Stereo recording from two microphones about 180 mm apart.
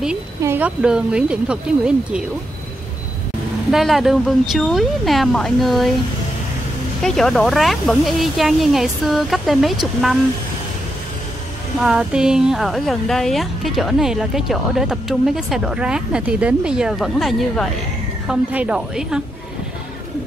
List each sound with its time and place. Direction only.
0.4 s speech: 10° right (ahead or behind)
3.7 s speech: centre (ahead or behind)
7.0 s speech: centre (ahead or behind)
11.8 s speech: 5° right (ahead or behind)